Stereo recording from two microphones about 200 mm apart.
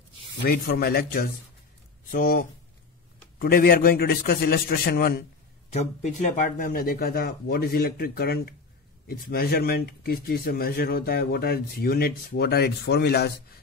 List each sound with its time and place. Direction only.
0.5 s speech: 50° left (ahead or behind)
5.7 s speech: 35° left (ahead or behind); by 13.3 s 55° left (ahead or behind)